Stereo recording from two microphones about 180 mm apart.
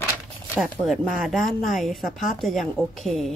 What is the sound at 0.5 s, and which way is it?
Speech, centre (ahead or behind).